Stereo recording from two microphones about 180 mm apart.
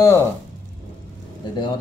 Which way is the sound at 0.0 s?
15° left (ahead or behind).